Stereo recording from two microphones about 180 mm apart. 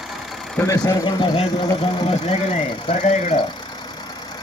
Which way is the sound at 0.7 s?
20° left (ahead or behind).